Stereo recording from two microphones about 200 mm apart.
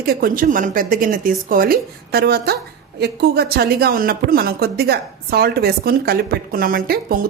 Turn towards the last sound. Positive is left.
turn(degrees=-45)  # may be behind; listen again after turning